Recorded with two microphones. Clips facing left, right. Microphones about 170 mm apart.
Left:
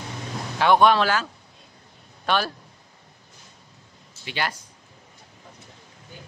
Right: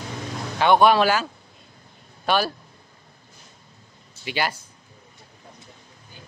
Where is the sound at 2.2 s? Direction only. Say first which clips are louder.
Right 2 dB; 5° right (ahead or behind).